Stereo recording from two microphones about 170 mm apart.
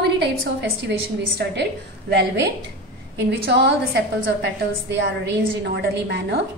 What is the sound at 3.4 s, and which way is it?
A woman's voice, 70° right (ahead or behind).